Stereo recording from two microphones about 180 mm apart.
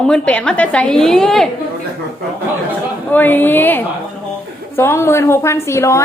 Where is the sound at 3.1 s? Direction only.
10° left (ahead or behind).